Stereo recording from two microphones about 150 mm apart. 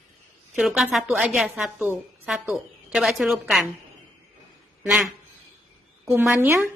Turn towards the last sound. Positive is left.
turn(degrees=-15)  # may be behind; listen again after turning